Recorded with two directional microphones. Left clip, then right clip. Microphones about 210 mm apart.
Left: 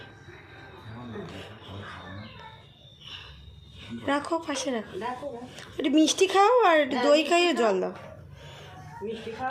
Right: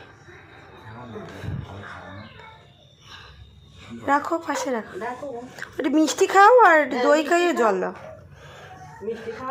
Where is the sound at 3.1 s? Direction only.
Centre (ahead or behind).